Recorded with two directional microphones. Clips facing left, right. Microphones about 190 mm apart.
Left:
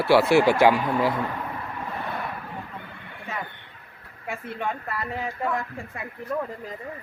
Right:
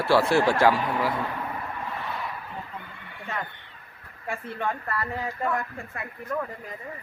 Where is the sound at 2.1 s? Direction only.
55° left (ahead or behind).